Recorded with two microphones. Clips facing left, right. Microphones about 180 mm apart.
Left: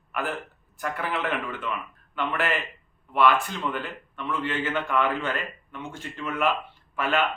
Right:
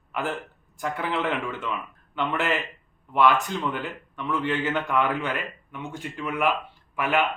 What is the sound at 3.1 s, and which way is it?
A man's voice, 15° right (ahead or behind).